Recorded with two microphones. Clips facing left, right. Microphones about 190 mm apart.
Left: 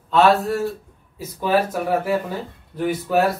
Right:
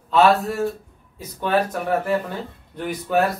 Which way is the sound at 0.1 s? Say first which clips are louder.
Left 1 dB; centre (ahead or behind).